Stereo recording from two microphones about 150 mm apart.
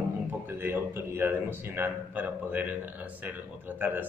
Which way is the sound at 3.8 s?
10° right (ahead or behind).